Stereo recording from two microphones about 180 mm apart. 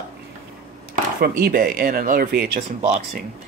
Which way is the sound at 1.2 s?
55° right (ahead or behind).